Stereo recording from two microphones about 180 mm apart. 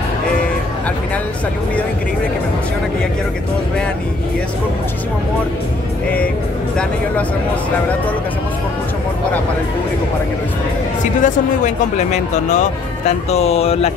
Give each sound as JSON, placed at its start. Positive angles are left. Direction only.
{"t": 11.2, "sound": "speech", "side_deg": 45}